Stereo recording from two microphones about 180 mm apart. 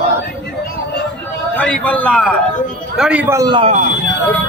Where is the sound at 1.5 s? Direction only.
5° left (ahead or behind).